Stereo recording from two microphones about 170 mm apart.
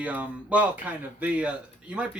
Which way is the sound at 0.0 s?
10° right (ahead or behind).